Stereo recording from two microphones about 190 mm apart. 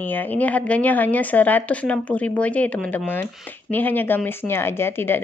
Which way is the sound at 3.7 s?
10° left (ahead or behind).